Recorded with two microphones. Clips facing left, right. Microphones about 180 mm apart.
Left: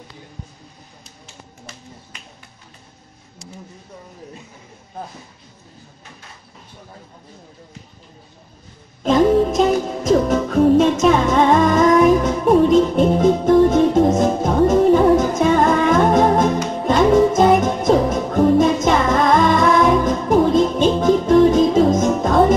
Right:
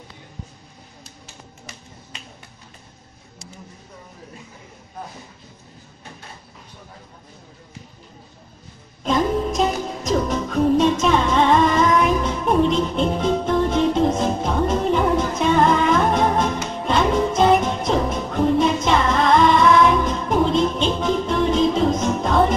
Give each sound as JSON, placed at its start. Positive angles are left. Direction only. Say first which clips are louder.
{"t": 9.0, "sound": "music", "louder": "left 6 dB", "side_deg": 45}